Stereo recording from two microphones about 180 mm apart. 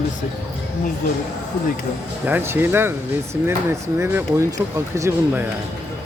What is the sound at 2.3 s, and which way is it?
Speech, 10° right (ahead or behind).